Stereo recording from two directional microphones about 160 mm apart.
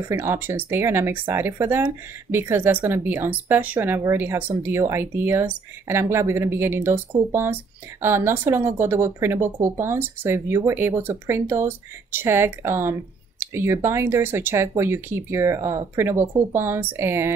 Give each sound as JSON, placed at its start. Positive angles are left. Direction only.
{"t": 0.1, "sound": "speech", "side_deg": -15}
{"t": 8.0, "sound": "speech", "side_deg": -15}